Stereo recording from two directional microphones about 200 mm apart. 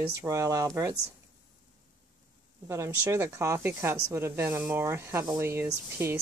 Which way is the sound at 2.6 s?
15° right (ahead or behind).